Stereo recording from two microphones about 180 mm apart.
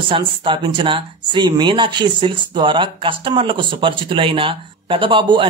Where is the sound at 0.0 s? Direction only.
30° right (ahead or behind).